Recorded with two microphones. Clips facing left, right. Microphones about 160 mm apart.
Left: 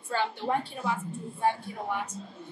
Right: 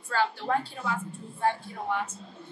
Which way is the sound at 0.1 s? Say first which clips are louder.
Right 1 dB; 20° left (ahead or behind).